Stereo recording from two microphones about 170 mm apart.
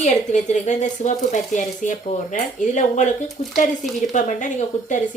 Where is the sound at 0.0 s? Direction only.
45° left (ahead or behind).